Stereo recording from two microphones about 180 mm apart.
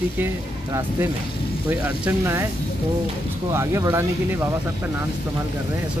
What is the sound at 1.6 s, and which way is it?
Speech, 10° right (ahead or behind).